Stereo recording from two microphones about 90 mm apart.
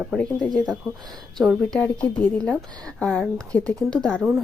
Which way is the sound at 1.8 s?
15° left (ahead or behind).